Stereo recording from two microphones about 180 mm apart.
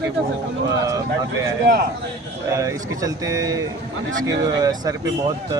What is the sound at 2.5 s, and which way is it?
Speech, 15° right (ahead or behind).